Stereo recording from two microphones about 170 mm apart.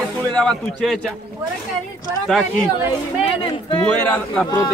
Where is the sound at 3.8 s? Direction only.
10° left (ahead or behind).